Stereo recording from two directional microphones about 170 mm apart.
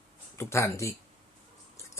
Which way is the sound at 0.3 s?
15° left (ahead or behind).